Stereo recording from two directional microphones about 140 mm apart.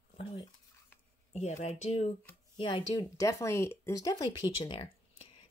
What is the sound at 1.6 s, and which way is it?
Speech, 50° left (ahead or behind).